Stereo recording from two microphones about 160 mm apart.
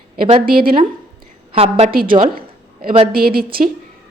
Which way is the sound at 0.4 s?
65° right (ahead or behind).